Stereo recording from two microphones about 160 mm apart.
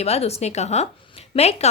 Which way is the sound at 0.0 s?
40° left (ahead or behind).